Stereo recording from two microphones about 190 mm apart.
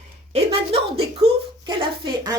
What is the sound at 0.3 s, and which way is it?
Speech, 30° right (ahead or behind).